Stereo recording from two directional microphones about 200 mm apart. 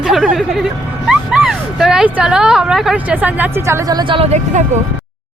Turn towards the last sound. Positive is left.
turn(degrees=-35)  # may be behind; listen again after turning